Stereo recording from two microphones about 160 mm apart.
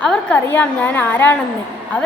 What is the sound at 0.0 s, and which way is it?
A woman's voice, 5° left (ahead or behind).